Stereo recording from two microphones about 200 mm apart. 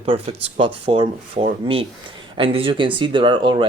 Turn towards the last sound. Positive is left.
turn(degrees=-25)  # may be behind; listen again after turning